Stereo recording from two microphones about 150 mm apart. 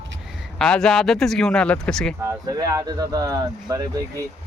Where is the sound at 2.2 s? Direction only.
25° right (ahead or behind).